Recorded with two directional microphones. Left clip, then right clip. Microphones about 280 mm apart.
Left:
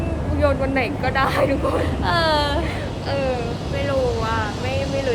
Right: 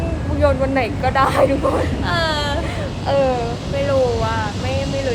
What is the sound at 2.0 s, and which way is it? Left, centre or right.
Speech, centre.